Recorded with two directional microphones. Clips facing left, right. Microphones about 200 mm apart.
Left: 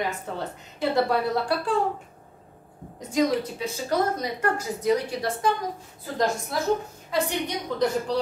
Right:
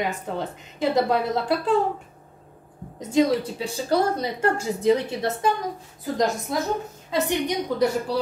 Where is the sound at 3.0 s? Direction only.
25° right (ahead or behind).